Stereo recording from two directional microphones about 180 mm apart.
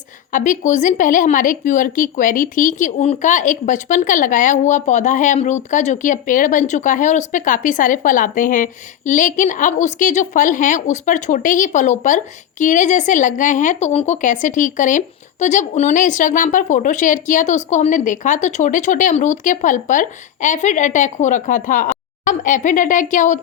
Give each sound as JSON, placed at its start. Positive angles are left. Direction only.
{"t": 0.3, "sound": "a woman's voice", "side_deg": 45}